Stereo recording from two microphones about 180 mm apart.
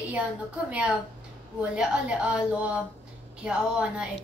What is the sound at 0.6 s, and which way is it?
A woman's voice, 5° right (ahead or behind).